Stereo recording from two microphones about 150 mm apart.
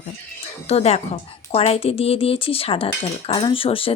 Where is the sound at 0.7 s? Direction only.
45° left (ahead or behind).